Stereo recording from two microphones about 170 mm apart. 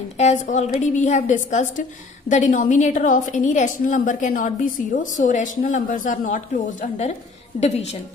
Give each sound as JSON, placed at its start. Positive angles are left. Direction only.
{"t": 0.2, "sound": "a woman's voice", "side_deg": 45}